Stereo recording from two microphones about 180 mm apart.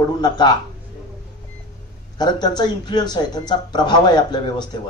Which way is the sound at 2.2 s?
25° left (ahead or behind).